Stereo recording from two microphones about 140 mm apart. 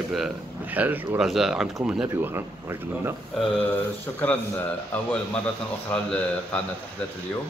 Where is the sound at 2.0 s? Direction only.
20° right (ahead or behind).